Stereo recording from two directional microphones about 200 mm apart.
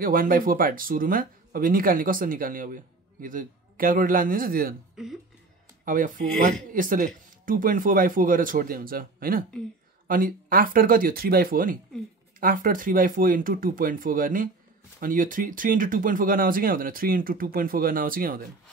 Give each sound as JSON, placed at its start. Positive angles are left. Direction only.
{"t": 0.0, "sound": "speech", "side_deg": -45}
{"t": 5.0, "sound": "a sound", "side_deg": -5}
{"t": 5.9, "sound": "speech", "side_deg": -40}